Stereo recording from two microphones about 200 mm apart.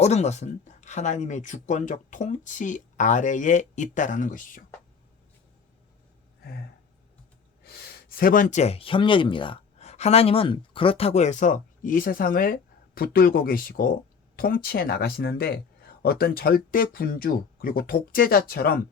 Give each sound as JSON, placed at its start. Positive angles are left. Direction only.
{"t": 0.0, "sound": "speech", "side_deg": 35}
{"t": 7.6, "sound": "speech", "side_deg": 50}